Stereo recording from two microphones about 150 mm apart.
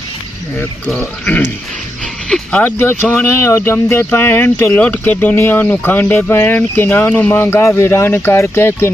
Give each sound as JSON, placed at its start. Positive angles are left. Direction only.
{"t": 0.6, "sound": "speech", "side_deg": 10}